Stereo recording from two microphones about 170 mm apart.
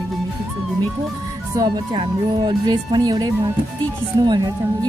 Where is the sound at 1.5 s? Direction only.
25° right (ahead or behind).